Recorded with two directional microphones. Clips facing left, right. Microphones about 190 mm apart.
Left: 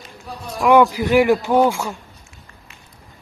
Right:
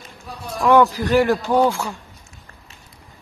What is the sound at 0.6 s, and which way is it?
Speech, 10° left (ahead or behind).